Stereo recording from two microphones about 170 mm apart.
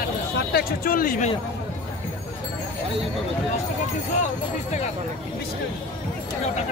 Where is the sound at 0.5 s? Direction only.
65° left (ahead or behind).